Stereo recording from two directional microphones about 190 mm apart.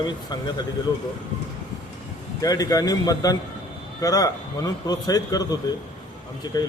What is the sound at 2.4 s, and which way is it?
A man's voice, 20° left (ahead or behind).